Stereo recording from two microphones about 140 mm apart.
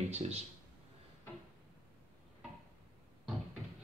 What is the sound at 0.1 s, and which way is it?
Speech, 50° right (ahead or behind).